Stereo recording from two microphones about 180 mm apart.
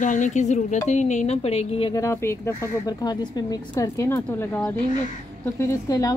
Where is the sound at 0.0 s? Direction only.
45° left (ahead or behind).